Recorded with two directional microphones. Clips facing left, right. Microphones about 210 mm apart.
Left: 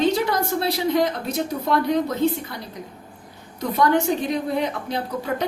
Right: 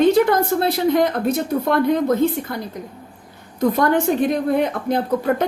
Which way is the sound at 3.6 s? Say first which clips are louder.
Right 3 dB; 50° right (ahead or behind).